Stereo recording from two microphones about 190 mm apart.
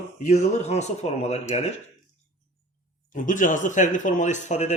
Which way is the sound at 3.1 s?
45° left (ahead or behind).